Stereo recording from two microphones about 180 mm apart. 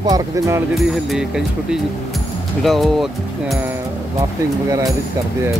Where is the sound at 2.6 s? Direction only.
Centre (ahead or behind).